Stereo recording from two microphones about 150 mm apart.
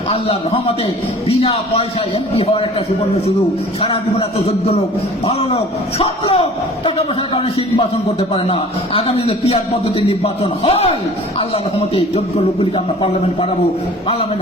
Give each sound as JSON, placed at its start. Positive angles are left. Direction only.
{"t": 0.1, "sound": "a man's voice", "side_deg": 40}
{"t": 3.8, "sound": "a man's voice", "side_deg": 40}
{"t": 8.3, "sound": "a man's voice", "side_deg": 40}